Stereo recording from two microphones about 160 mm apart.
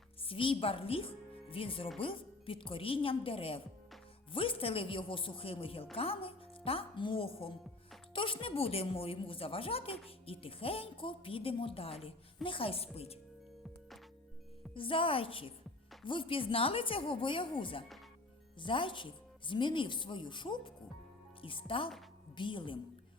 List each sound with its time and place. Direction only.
0.3 s a woman's voice: 35° left (ahead or behind)
14.7 s a woman's voice: 35° left (ahead or behind)